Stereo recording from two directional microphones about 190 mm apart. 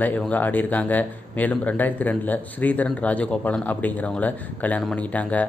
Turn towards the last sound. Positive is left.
turn(degrees=5)  # may be behind; listen again after turning